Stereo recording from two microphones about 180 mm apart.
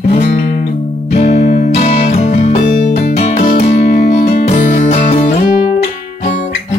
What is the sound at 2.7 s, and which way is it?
Music, 45° left (ahead or behind).